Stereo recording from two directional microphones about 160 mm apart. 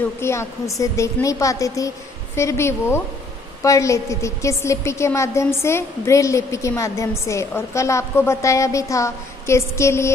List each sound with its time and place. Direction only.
0.2 s a woman's voice: 15° left (ahead or behind)